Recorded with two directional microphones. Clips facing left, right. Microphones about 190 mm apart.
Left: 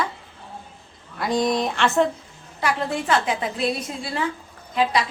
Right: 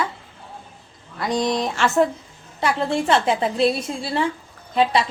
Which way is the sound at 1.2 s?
Centre (ahead or behind).